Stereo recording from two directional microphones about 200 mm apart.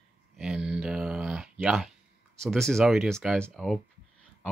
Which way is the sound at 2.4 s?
Centre (ahead or behind).